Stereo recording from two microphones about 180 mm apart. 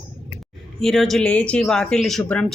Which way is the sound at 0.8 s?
Centre (ahead or behind).